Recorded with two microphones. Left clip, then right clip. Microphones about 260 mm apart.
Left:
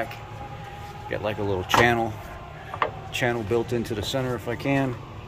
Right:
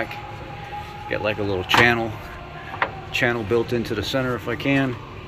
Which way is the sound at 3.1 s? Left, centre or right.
Centre.